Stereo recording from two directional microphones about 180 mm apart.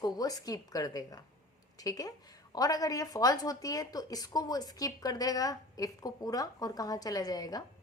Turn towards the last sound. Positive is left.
turn(degrees=20)  # may be behind; listen again after turning